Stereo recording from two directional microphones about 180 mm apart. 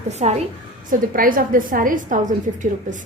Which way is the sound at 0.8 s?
50° right (ahead or behind).